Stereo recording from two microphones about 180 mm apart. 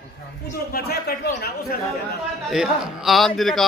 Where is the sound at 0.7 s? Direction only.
60° left (ahead or behind).